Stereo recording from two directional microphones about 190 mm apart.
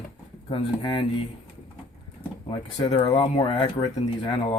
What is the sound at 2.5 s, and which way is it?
Speech, 30° left (ahead or behind).